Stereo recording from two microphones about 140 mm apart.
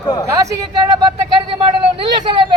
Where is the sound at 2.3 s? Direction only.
35° right (ahead or behind).